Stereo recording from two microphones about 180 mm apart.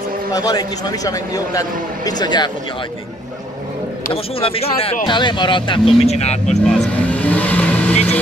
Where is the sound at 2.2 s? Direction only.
25° left (ahead or behind).